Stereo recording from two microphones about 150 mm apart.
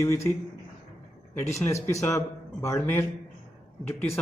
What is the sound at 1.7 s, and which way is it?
A man's voice, 20° left (ahead or behind).